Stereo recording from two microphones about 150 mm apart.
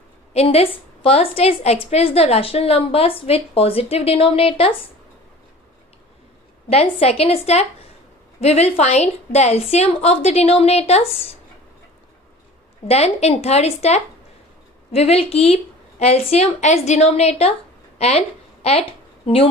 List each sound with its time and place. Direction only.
0.3 s a woman's voice: 40° left (ahead or behind)
6.7 s a woman's voice: 40° left (ahead or behind)
12.9 s a woman's voice: 45° left (ahead or behind)
17.9 s a sound: 45° left (ahead or behind)
18.6 s a woman's voice: 40° left (ahead or behind)